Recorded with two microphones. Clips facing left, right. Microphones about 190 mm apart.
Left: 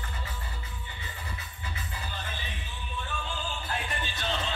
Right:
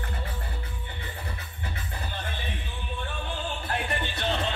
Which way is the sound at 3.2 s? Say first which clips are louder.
Right 3 dB; 60° right (ahead or behind).